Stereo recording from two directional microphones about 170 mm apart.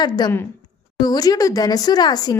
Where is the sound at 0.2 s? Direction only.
25° left (ahead or behind).